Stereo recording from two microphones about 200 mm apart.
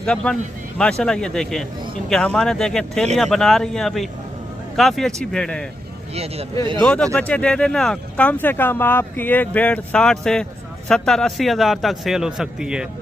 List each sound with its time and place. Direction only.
0.0 s speech: 5° left (ahead or behind)
6.1 s speech: 30° right (ahead or behind)
6.8 s speech: 5° left (ahead or behind)